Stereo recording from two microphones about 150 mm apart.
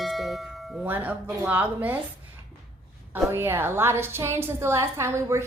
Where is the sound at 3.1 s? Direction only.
15° right (ahead or behind).